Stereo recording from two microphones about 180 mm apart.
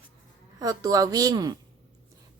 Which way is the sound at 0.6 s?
20° right (ahead or behind).